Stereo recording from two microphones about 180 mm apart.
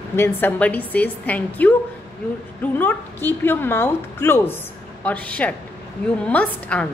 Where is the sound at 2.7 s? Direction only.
10° left (ahead or behind).